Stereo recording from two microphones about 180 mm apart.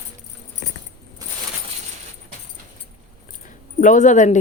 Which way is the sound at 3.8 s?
45° left (ahead or behind).